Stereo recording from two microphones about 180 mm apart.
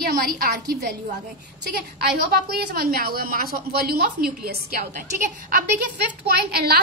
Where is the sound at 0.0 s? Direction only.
55° right (ahead or behind).